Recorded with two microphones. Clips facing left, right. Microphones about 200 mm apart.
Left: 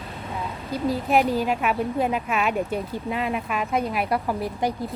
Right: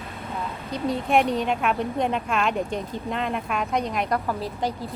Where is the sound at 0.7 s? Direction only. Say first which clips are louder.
Left 1 dB; centre (ahead or behind).